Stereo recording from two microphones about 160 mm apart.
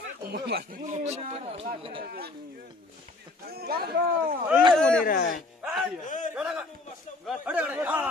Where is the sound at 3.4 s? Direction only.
75° right (ahead or behind).